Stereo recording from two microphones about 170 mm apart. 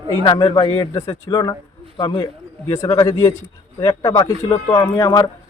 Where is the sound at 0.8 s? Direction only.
15° left (ahead or behind).